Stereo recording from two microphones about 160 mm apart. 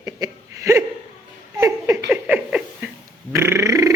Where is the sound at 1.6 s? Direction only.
20° right (ahead or behind).